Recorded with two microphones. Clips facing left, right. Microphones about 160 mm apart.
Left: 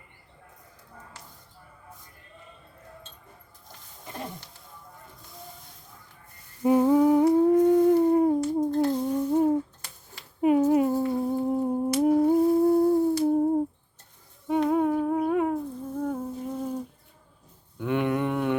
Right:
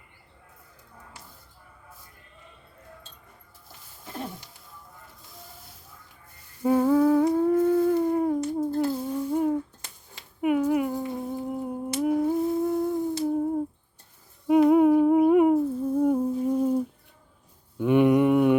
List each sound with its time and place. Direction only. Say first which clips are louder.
6.6 s humming: left 1 dB; 10° left (ahead or behind)
7.9 s humming: left 3 dB; 30° left (ahead or behind)
14.4 s humming: right 6 dB; 10° right (ahead or behind)
17.7 s mantra: right 7 dB; 15° right (ahead or behind)